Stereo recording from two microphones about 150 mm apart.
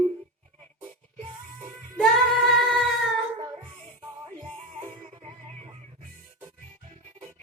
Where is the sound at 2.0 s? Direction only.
5° left (ahead or behind).